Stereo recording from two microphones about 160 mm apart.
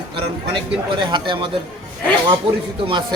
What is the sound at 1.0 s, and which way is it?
Speech, 30° right (ahead or behind).